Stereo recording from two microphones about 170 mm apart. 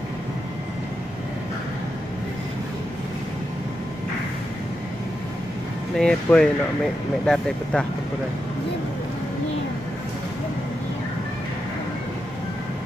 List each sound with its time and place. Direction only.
5.9 s speech: 5° left (ahead or behind)